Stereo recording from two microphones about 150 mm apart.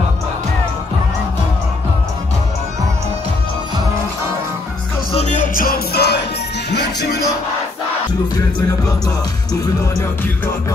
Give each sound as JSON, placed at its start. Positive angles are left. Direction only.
{"t": 5.1, "sound": "music", "side_deg": 50}
{"t": 5.5, "sound": "music", "side_deg": 80}
{"t": 8.6, "sound": "music", "side_deg": 25}